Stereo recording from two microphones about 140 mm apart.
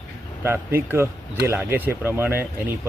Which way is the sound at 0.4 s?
15° right (ahead or behind).